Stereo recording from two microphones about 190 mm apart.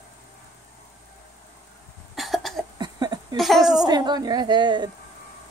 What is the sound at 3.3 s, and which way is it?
Speech, centre (ahead or behind).